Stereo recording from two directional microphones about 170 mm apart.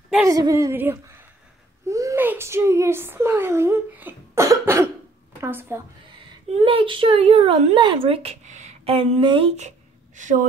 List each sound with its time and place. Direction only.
0.3 s speech: 20° right (ahead or behind)
6.5 s speech: 30° right (ahead or behind)